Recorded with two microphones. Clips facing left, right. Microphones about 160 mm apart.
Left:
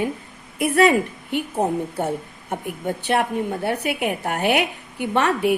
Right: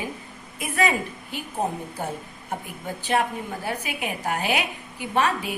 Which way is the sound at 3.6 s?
65° left (ahead or behind).